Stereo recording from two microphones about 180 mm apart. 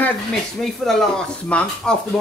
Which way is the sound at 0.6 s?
Centre (ahead or behind).